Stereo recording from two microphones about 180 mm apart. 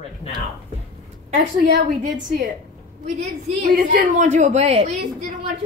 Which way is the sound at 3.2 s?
40° right (ahead or behind).